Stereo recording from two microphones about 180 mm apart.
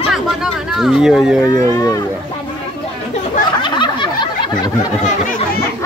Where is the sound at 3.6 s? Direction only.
25° left (ahead or behind).